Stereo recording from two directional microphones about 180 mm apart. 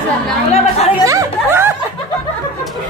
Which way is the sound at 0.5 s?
35° left (ahead or behind).